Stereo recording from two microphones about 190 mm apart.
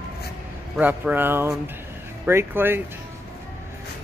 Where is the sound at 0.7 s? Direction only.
10° right (ahead or behind).